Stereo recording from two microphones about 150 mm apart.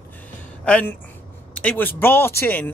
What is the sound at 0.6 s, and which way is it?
Speech, 10° left (ahead or behind).